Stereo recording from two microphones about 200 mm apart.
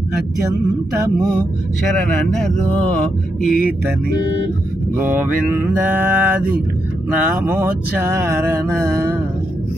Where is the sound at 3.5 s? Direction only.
45° left (ahead or behind).